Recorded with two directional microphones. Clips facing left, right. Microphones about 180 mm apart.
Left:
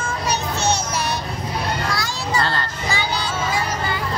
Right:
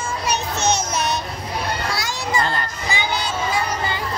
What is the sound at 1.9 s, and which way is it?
Children playing, 15° right (ahead or behind).